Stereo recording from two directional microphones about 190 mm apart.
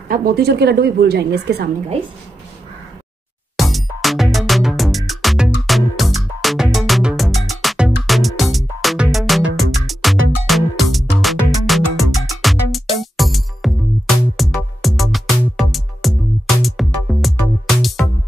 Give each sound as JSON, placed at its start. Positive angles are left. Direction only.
{"t": 0.1, "sound": "a woman's voice", "side_deg": -55}
{"t": 3.5, "sound": "music", "side_deg": 0}